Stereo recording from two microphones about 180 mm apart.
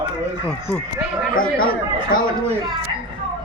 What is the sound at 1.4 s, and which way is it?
Speech, 55° left (ahead or behind).